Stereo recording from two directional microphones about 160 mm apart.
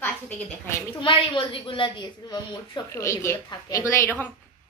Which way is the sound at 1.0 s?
35° left (ahead or behind).